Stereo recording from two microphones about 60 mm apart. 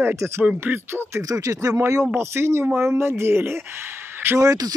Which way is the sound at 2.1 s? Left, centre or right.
Right.